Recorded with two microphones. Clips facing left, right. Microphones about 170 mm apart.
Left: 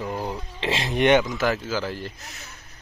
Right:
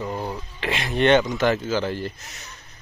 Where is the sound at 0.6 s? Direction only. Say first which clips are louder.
Left 1 dB; 25° left (ahead or behind).